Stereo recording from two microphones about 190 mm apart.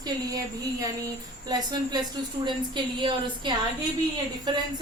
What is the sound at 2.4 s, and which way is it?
A woman's voice, 25° right (ahead or behind).